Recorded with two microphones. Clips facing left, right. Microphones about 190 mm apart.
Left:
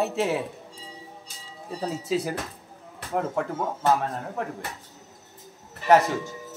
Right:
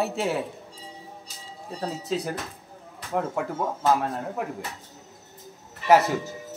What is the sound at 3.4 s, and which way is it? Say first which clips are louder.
Speech: left 1 dB; centre (ahead or behind).